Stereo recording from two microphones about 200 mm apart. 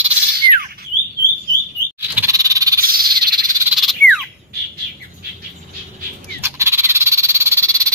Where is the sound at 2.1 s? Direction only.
15° right (ahead or behind).